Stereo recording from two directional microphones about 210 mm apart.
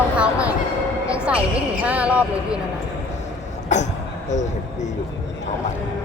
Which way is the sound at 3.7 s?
35° left (ahead or behind).